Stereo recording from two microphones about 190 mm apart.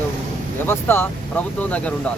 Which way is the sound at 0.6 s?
10° left (ahead or behind).